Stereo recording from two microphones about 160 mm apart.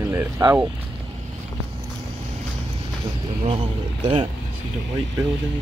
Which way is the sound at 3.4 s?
35° right (ahead or behind).